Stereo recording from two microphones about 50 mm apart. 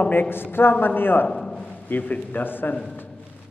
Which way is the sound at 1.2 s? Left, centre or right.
Centre.